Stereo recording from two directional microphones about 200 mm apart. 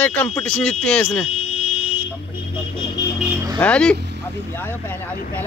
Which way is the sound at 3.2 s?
10° right (ahead or behind).